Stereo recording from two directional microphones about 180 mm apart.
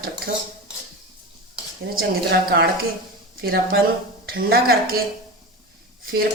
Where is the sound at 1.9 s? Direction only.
65° right (ahead or behind).